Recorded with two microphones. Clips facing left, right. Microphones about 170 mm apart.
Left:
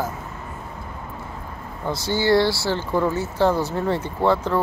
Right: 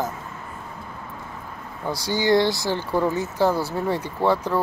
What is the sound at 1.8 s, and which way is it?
Speech, 15° right (ahead or behind).